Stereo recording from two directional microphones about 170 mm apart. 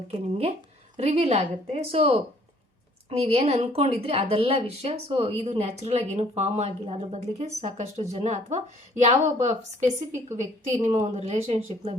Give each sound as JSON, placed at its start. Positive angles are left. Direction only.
{"t": 0.9, "sound": "speech", "side_deg": -35}